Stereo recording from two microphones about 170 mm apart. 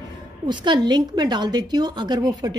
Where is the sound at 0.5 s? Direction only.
25° right (ahead or behind).